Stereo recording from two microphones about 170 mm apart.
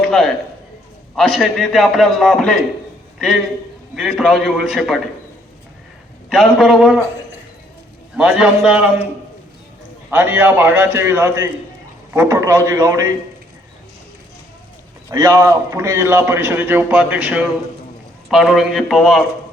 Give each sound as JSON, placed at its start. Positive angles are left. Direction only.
{"t": 0.0, "sound": "a sound", "side_deg": 0}
{"t": 1.1, "sound": "a man's voice", "side_deg": 0}
{"t": 6.3, "sound": "a man's voice", "side_deg": 0}
{"t": 8.1, "sound": "a man's voice", "side_deg": -5}
{"t": 10.1, "sound": "a man's voice", "side_deg": -10}
{"t": 15.1, "sound": "a man's voice", "side_deg": -20}